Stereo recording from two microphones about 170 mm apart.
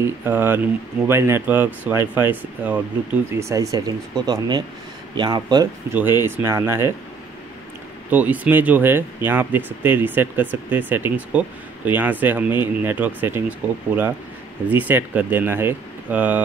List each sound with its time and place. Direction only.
0.0 s speech: 10° right (ahead or behind)
5.9 s speech: 15° right (ahead or behind)
8.1 s speech: 10° right (ahead or behind)